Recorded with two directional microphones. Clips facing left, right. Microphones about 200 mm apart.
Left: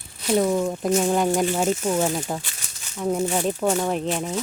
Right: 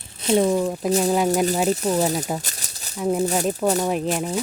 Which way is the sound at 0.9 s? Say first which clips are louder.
Right 1 dB; 35° right (ahead or behind).